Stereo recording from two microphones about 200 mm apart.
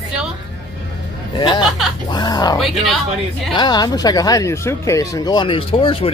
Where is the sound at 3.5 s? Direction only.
20° left (ahead or behind).